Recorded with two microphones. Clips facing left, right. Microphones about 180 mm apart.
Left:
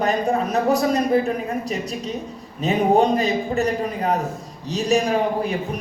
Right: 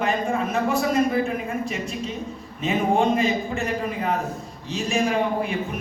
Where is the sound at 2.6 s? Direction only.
40° left (ahead or behind).